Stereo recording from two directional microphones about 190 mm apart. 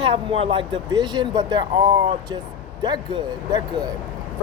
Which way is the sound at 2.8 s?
20° right (ahead or behind).